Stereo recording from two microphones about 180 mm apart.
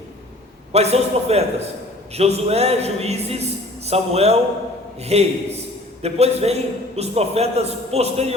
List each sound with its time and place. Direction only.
0.7 s a man's voice: 35° right (ahead or behind)